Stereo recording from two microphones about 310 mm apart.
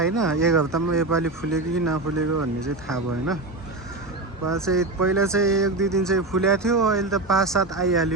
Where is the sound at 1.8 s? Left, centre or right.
Right.